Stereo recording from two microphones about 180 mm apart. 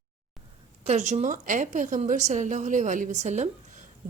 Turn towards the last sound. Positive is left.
turn(degrees=-40)  # may be behind; listen again after turning